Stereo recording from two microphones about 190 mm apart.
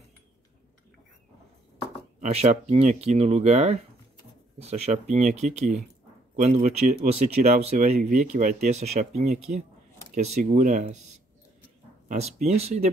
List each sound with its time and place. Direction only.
2.1 s speech: 35° right (ahead or behind)
12.1 s speech: 35° right (ahead or behind)